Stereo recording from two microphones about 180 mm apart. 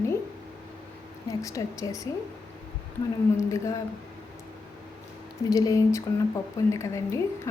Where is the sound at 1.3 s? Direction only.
20° left (ahead or behind).